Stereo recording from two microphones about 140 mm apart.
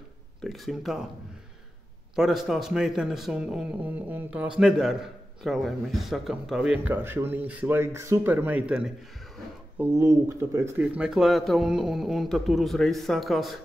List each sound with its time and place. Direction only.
0.4 s a man's voice: centre (ahead or behind)
2.1 s a man's voice: centre (ahead or behind)
9.8 s speech: 15° right (ahead or behind)
11.0 s a man's voice: 5° right (ahead or behind)